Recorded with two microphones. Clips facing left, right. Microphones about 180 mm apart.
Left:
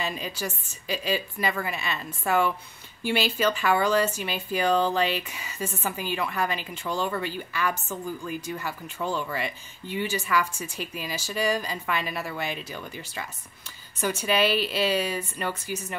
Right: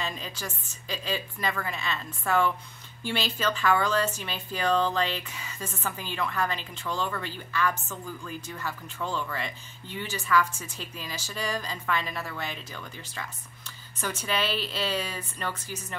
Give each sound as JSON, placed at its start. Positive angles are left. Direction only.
{"t": 0.0, "sound": "speech", "side_deg": 10}